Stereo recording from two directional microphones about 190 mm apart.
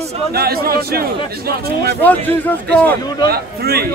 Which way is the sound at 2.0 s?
10° left (ahead or behind).